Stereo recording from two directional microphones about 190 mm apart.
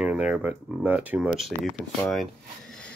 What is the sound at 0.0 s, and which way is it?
Speech, 5° right (ahead or behind).